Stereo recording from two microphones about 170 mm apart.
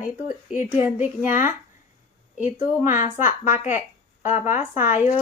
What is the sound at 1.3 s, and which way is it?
Speech, 50° left (ahead or behind).